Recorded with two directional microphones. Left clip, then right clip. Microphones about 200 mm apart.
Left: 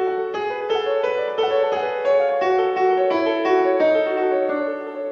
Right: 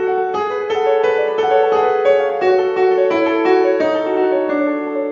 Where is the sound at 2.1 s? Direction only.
30° left (ahead or behind).